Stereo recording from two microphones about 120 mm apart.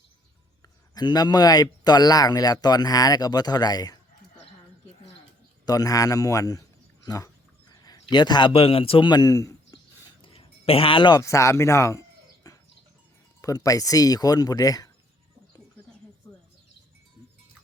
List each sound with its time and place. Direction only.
0.9 s speech: 35° left (ahead or behind)
5.6 s a man's voice: 30° left (ahead or behind)
10.2 s a sound: 50° left (ahead or behind)
11.2 s speech: 25° left (ahead or behind)
16.2 s bird: 20° left (ahead or behind)